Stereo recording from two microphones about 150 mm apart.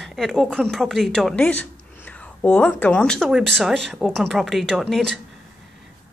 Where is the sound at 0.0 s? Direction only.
Centre (ahead or behind).